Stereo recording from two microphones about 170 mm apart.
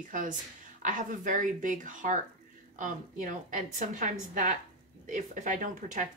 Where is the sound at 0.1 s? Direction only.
50° right (ahead or behind).